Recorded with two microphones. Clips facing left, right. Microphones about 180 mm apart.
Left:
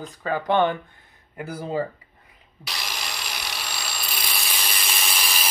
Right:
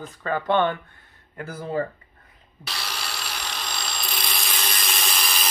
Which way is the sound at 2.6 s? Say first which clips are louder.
Even; 10° left (ahead or behind).